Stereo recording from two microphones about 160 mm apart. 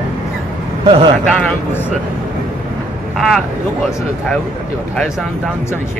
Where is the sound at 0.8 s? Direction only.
35° right (ahead or behind).